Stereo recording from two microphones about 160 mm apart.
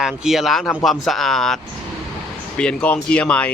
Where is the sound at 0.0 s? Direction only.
Centre (ahead or behind).